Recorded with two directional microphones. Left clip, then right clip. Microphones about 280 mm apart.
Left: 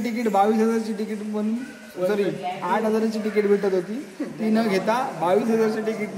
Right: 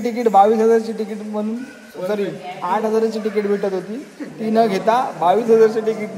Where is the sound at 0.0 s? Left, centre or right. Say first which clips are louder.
Right 7 dB; centre.